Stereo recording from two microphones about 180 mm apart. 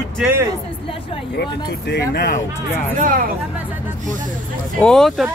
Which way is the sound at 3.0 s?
50° right (ahead or behind).